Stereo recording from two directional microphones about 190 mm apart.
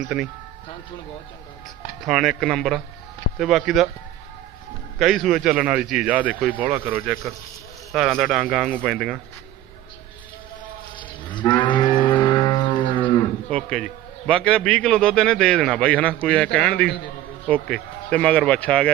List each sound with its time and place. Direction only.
0.1 s a man's voice: 5° right (ahead or behind)
2.0 s a man's voice: centre (ahead or behind)
4.9 s a man's voice: centre (ahead or behind)
10.9 s livestock: 25° left (ahead or behind)
13.5 s a man's voice: 5° left (ahead or behind)